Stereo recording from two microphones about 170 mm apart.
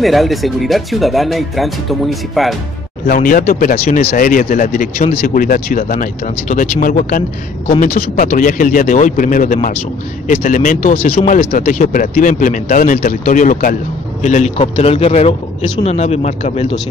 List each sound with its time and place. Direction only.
0.0 s speech: centre (ahead or behind)
3.1 s speech: 55° left (ahead or behind)
10.9 s a man's voice: 35° left (ahead or behind)
11.5 s speech: 55° left (ahead or behind)
14.2 s a man's voice: 40° left (ahead or behind)